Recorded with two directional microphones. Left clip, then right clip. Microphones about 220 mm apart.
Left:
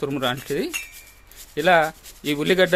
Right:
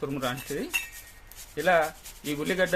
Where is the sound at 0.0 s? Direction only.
50° left (ahead or behind).